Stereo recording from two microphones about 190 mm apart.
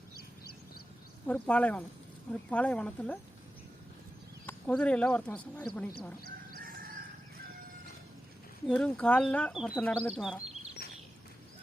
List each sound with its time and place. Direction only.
1.3 s speech: 5° left (ahead or behind)
4.4 s speech: 5° left (ahead or behind)
6.6 s chicken: 50° right (ahead or behind)
8.6 s speech: 5° left (ahead or behind)